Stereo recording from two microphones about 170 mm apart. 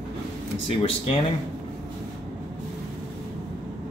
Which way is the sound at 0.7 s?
35° left (ahead or behind).